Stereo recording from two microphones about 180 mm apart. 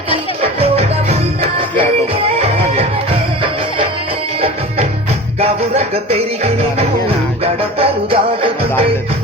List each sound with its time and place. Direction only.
0.6 s music: 35° right (ahead or behind)
4.4 s music: 35° right (ahead or behind)